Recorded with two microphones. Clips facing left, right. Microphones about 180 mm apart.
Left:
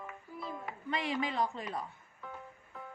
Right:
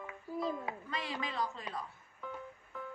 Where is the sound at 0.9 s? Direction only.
25° left (ahead or behind).